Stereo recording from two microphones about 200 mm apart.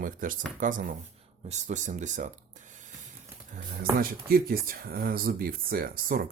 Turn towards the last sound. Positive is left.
turn(degrees=-45)  # may be behind; listen again after turning